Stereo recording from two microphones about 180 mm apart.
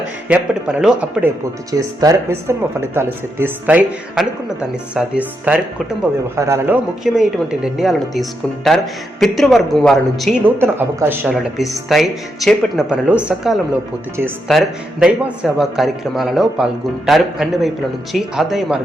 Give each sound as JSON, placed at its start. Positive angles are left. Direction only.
{"t": 0.3, "sound": "speech", "side_deg": -5}
{"t": 1.7, "sound": "speech", "side_deg": -20}
{"t": 10.4, "sound": "speech", "side_deg": -10}
{"t": 11.5, "sound": "speech", "side_deg": 0}